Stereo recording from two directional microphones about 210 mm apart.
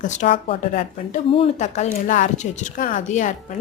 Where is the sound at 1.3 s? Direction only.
30° left (ahead or behind).